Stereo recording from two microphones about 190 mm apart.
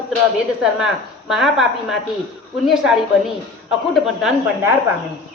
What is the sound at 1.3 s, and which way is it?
A woman's voice, centre (ahead or behind).